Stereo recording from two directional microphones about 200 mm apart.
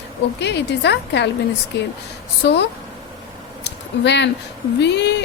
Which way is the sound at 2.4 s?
55° left (ahead or behind).